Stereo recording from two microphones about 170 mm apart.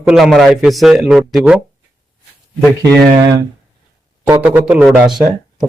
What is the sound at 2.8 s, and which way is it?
A man's voice, 20° right (ahead or behind).